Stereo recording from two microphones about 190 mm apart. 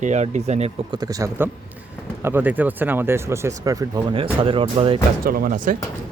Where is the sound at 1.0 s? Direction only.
20° right (ahead or behind).